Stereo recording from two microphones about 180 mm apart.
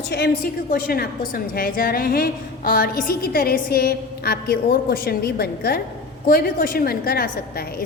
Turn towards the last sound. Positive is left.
turn(degrees=55)  # may be behind; listen again after turning